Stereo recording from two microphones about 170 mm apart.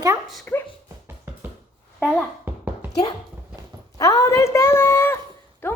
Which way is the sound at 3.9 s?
20° left (ahead or behind).